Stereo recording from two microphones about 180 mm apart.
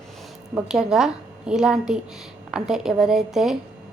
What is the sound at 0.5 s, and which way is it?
A woman's voice, 5° right (ahead or behind).